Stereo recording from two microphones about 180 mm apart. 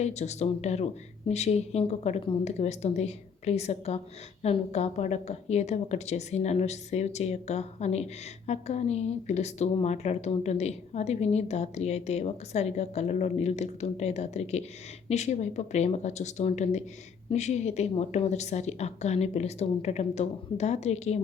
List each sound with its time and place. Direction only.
0.0 s a woman's voice: 40° left (ahead or behind)